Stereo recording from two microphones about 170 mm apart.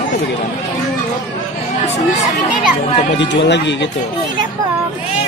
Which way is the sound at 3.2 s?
90° left.